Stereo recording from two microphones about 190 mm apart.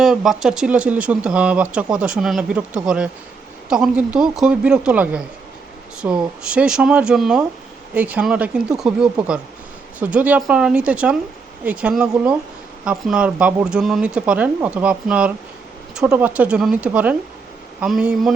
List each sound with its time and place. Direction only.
0.0 s speech: centre (ahead or behind)